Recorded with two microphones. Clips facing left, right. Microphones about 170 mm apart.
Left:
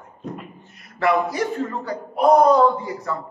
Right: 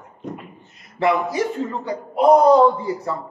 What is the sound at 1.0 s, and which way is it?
Speech, 25° right (ahead or behind).